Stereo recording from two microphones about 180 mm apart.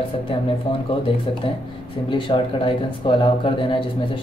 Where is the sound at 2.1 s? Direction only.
30° left (ahead or behind).